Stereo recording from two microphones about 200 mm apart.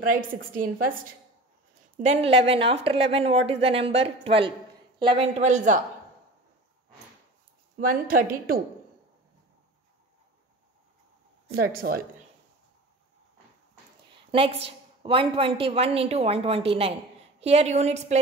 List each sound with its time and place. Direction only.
0.1 s a woman's voice: 45° right (ahead or behind)
2.0 s a woman's voice: 30° right (ahead or behind)
7.7 s a woman's voice: 45° right (ahead or behind)
11.5 s a woman's voice: 50° right (ahead or behind)
14.3 s a woman's voice: 30° right (ahead or behind)